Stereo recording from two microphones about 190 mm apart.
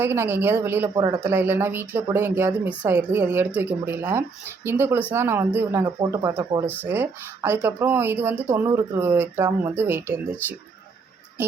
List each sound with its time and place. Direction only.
0.0 s speech: 10° right (ahead or behind)